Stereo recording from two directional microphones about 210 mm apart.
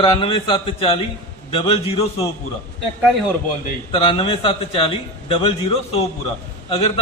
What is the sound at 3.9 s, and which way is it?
A man's voice, 25° left (ahead or behind).